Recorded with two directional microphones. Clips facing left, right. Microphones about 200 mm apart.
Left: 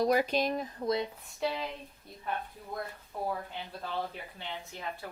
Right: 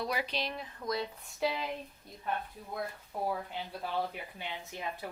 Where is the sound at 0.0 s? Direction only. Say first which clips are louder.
Left 8 dB; 45° left (ahead or behind).